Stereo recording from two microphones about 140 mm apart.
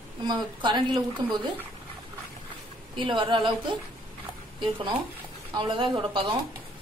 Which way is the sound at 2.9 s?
35° right (ahead or behind).